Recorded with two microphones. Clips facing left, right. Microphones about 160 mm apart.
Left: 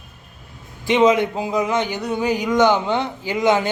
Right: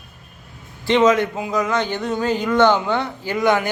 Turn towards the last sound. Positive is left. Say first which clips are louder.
# even
turn(degrees=20)  # may be behind; listen again after turning